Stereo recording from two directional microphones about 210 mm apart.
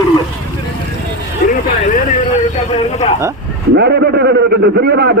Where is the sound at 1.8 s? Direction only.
40° left (ahead or behind).